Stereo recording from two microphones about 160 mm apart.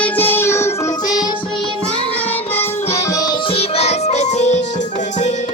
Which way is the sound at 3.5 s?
40° left (ahead or behind).